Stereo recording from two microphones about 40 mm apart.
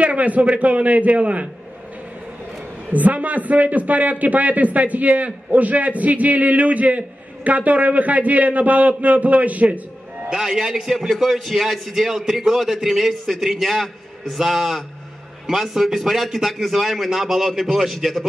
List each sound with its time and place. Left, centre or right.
0.0 s a man's voice: right
2.9 s a man's voice: right
10.3 s a man's voice: centre